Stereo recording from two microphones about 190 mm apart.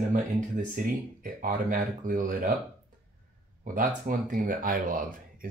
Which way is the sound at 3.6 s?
45° right (ahead or behind).